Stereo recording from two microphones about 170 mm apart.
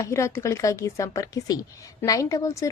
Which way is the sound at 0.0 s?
15° left (ahead or behind).